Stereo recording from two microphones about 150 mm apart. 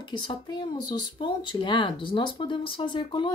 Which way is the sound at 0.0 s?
30° left (ahead or behind).